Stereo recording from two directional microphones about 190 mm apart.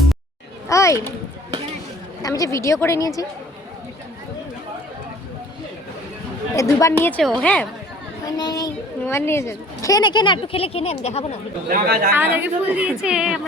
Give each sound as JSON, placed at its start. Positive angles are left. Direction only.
{"t": 0.7, "sound": "a child's voice", "side_deg": 15}
{"t": 2.2, "sound": "a woman's voice", "side_deg": 20}
{"t": 6.6, "sound": "a woman's voice", "side_deg": 15}
{"t": 7.2, "sound": "a woman's voice", "side_deg": 0}
{"t": 8.4, "sound": "a child's voice", "side_deg": 20}
{"t": 11.7, "sound": "speech", "side_deg": -50}
{"t": 12.1, "sound": "a woman's voice", "side_deg": -10}